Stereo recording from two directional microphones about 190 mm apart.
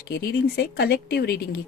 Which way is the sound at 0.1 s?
60° left (ahead or behind).